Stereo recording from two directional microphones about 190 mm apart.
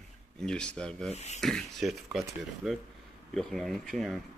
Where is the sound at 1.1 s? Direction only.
35° left (ahead or behind).